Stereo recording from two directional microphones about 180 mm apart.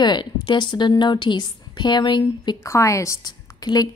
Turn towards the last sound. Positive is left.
turn(degrees=20)  # may be behind; listen again after turning